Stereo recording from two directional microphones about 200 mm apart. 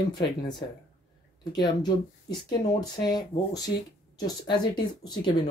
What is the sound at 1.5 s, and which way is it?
Speech, 20° left (ahead or behind).